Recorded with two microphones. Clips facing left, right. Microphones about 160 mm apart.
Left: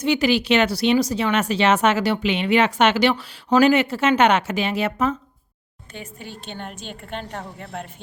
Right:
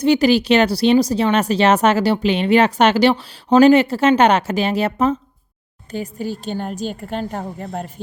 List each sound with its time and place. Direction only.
0.0 s speech: 35° right (ahead or behind)